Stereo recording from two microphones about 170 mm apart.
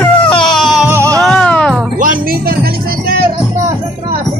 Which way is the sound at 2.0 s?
55° right (ahead or behind).